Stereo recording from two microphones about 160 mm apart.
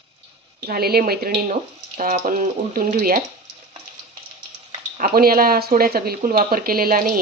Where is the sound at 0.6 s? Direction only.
75° right (ahead or behind).